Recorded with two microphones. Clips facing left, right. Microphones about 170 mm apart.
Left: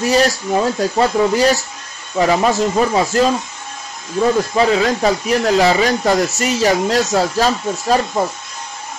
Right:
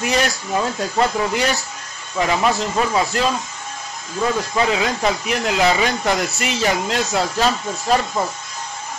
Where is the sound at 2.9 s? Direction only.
40° left (ahead or behind).